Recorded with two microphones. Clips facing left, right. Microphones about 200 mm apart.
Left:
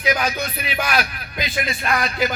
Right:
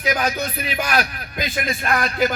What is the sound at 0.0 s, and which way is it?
A man's voice, 45° right (ahead or behind).